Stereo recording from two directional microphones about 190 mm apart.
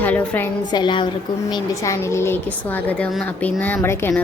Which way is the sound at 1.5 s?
15° left (ahead or behind).